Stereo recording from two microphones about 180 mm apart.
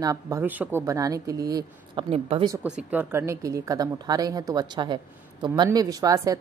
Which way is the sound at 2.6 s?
5° right (ahead or behind).